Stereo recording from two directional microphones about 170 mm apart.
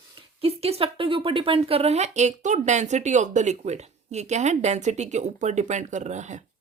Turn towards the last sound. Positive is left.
turn(degrees=-45)  # may be behind; listen again after turning